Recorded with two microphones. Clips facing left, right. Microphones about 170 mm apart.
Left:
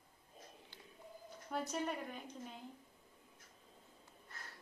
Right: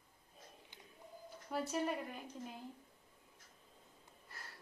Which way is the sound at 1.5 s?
5° right (ahead or behind).